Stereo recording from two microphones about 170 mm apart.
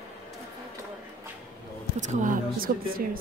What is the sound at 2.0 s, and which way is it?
Speech, 50° right (ahead or behind).